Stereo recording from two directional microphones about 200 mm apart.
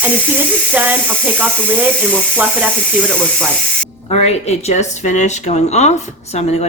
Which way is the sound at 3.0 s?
5° left (ahead or behind).